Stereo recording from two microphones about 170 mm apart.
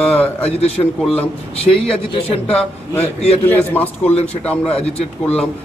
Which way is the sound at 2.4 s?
10° left (ahead or behind).